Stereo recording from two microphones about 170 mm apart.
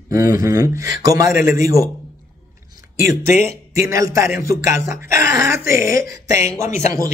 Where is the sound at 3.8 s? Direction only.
20° right (ahead or behind).